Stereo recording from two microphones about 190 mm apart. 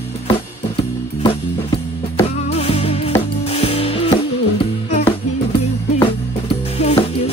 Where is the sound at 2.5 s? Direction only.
30° left (ahead or behind).